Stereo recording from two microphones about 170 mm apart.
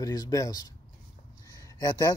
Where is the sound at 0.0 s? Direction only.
20° left (ahead or behind).